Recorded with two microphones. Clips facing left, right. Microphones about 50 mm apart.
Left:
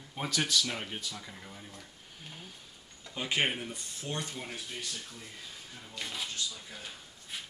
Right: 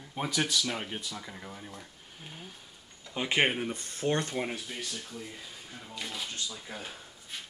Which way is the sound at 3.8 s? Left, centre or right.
Right.